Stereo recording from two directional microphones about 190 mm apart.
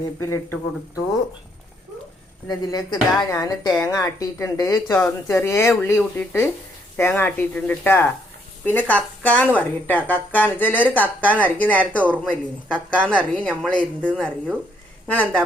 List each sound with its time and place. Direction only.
0.3 s speech: 15° left (ahead or behind)
2.5 s a woman's voice: 20° left (ahead or behind)